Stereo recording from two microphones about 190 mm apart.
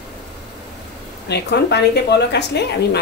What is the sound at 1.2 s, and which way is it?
A woman's voice, 60° left (ahead or behind).